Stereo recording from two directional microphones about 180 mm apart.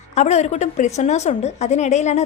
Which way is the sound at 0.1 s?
40° left (ahead or behind).